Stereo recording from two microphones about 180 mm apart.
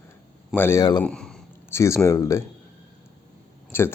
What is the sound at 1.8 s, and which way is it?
Speech, 15° left (ahead or behind).